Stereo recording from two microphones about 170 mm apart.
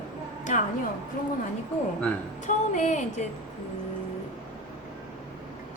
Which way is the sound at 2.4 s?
45° left (ahead or behind).